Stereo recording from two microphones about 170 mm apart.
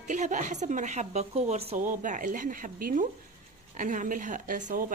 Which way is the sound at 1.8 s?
50° right (ahead or behind).